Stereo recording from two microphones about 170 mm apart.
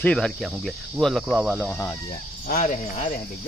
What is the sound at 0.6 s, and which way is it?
Cricket, centre (ahead or behind).